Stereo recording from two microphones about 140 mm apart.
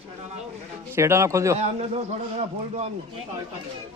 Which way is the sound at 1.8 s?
50° right (ahead or behind).